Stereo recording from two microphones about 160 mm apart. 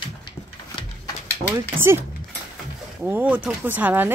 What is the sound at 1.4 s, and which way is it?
Speech, 20° right (ahead or behind).